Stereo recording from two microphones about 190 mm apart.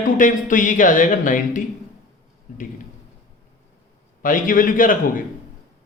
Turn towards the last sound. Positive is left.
turn(degrees=45)  # may be behind; listen again after turning